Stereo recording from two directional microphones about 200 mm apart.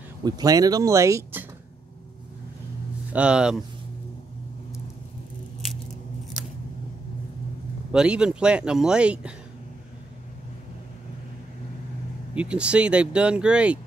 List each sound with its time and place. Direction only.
0.2 s speech: 20° right (ahead or behind)
3.1 s speech: 5° right (ahead or behind)
7.9 s speech: 5° right (ahead or behind)
12.4 s speech: 5° right (ahead or behind)